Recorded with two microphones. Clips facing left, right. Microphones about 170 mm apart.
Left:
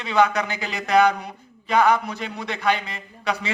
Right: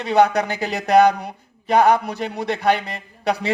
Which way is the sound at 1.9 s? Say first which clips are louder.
Right 3 dB; 60° right (ahead or behind).